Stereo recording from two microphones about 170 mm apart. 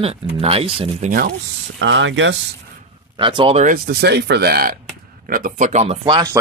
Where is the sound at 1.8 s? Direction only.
90° right.